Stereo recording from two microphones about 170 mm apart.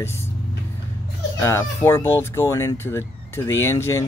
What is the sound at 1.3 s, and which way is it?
Speech, 15° left (ahead or behind).